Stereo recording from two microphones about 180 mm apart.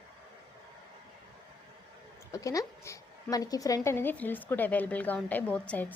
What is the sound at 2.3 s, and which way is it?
A woman's voice, 20° left (ahead or behind).